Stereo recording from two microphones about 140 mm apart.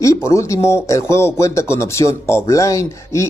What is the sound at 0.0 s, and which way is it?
Speech, 20° left (ahead or behind).